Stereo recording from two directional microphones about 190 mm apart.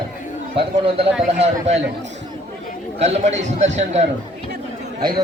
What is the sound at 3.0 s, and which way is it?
Speech, 35° right (ahead or behind).